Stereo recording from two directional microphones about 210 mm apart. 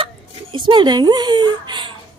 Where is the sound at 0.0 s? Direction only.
25° right (ahead or behind).